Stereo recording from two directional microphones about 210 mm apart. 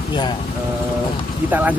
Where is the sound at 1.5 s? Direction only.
10° right (ahead or behind).